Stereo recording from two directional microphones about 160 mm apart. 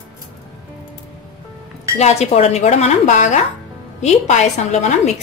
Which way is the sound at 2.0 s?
40° left (ahead or behind).